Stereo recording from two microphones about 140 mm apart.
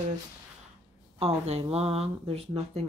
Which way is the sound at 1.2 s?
45° right (ahead or behind).